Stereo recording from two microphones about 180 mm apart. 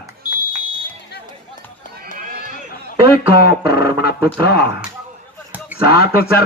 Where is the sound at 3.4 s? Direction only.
60° left (ahead or behind).